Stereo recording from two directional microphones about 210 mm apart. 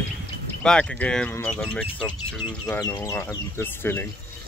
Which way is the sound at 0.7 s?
5° left (ahead or behind).